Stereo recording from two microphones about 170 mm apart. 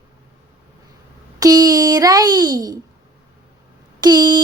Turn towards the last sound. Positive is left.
turn(degrees=-25)  # may be behind; listen again after turning